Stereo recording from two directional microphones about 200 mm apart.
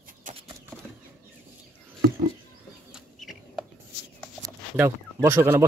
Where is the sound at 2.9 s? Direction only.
Centre (ahead or behind).